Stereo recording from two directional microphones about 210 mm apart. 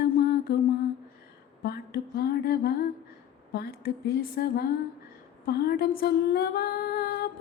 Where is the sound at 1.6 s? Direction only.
50° left (ahead or behind).